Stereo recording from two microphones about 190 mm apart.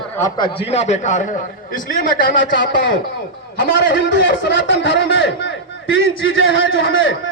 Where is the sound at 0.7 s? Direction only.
35° left (ahead or behind).